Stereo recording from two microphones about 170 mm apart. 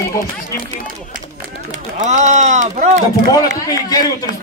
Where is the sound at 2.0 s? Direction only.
45° right (ahead or behind).